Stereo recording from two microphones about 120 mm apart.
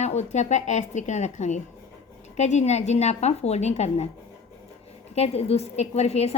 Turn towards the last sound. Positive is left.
turn(degrees=65)  # may be behind; listen again after turning